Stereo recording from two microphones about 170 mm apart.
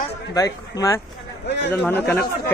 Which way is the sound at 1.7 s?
10° left (ahead or behind).